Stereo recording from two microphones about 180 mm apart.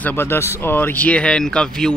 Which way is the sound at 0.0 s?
10° left (ahead or behind).